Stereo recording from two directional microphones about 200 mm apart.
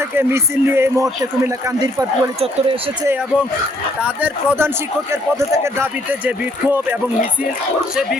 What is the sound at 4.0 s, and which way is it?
Speech, 5° right (ahead or behind).